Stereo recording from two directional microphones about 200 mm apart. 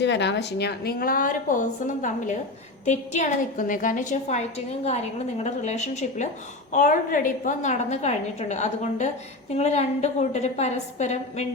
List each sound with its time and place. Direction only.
0.0 s a woman's voice: 60° left (ahead or behind); by 11.4 s 35° left (ahead or behind)